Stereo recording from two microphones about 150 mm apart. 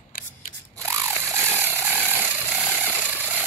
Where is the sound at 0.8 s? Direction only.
15° right (ahead or behind).